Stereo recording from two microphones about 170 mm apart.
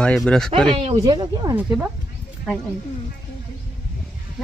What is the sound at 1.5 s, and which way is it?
Speech, 10° right (ahead or behind).